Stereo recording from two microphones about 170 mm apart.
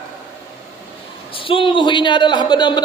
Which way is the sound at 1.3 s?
30° left (ahead or behind).